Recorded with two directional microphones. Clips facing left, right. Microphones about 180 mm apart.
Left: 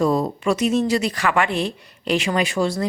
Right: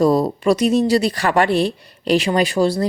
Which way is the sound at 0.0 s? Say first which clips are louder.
Right 4 dB; 35° right (ahead or behind).